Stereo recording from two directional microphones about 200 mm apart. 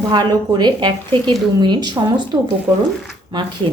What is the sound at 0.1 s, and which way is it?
A woman's voice, 20° right (ahead or behind).